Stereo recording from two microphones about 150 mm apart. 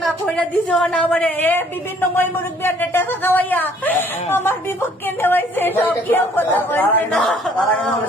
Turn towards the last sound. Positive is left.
turn(degrees=0)  # may be behind; listen again after turning